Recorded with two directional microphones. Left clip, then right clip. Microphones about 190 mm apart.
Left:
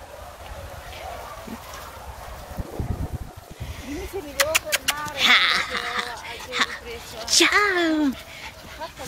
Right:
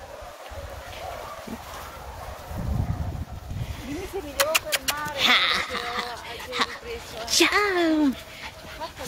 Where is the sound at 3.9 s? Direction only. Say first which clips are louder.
Left 2 dB; 15° right (ahead or behind).